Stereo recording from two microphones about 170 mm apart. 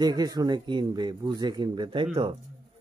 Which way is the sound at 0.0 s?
25° right (ahead or behind).